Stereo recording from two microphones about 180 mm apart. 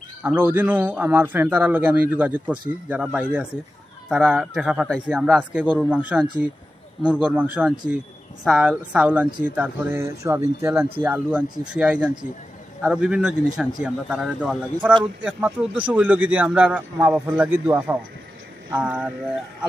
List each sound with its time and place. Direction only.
0.2 s a man's voice: 10° right (ahead or behind)